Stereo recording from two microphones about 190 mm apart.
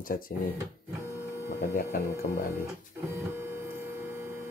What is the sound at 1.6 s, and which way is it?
Speech, 50° left (ahead or behind).